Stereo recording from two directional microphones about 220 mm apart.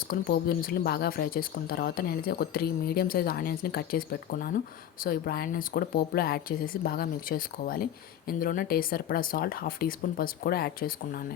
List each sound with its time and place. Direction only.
0.1 s speech: 40° left (ahead or behind)